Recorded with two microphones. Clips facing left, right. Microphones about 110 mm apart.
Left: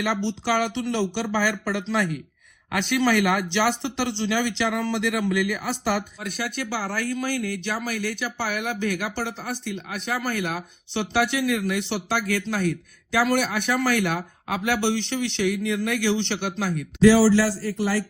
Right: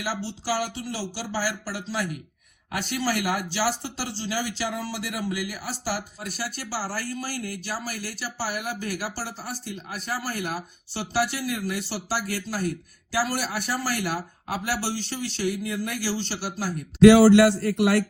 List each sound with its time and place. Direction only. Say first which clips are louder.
0.3 s speech: left 4 dB; 60° left (ahead or behind)
17.0 s a man's voice: right 3 dB; 60° right (ahead or behind)